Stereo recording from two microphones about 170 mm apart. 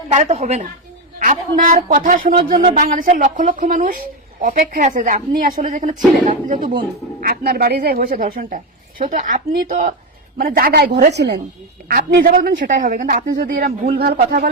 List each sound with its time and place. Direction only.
0.1 s speech: 45° right (ahead or behind)
7.2 s speech: 60° right (ahead or behind)
11.1 s speech: 90° right
11.9 s speech: 60° right (ahead or behind)
13.9 s speech: 70° right (ahead or behind)